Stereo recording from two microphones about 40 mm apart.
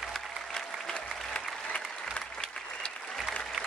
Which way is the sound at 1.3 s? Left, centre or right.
Left.